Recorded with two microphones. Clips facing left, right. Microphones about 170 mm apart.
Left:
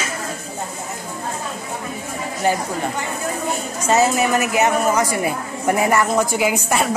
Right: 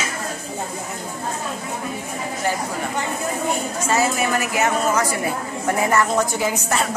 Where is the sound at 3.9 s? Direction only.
20° left (ahead or behind).